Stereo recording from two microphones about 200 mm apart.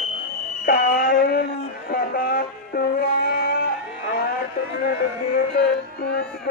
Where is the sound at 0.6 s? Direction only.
45° left (ahead or behind).